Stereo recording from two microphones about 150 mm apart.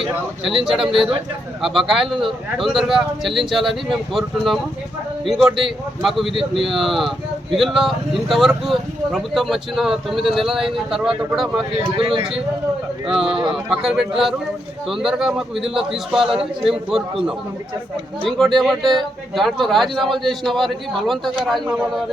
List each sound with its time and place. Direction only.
0.6 s speech: 5° right (ahead or behind)
11.9 s speech: 35° right (ahead or behind)
13.1 s speech: 5° right (ahead or behind)
18.3 s speech: centre (ahead or behind)